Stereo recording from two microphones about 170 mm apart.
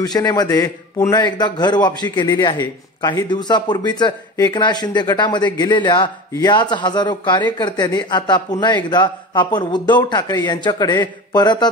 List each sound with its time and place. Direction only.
0.0 s a man's voice: 25° left (ahead or behind)